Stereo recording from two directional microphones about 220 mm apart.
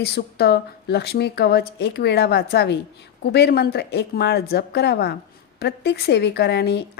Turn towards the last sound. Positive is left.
turn(degrees=50)  # may be behind; listen again after turning